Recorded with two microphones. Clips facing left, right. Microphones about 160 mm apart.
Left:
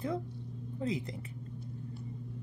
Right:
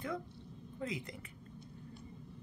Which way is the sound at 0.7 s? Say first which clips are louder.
Left 6 dB; 30° left (ahead or behind).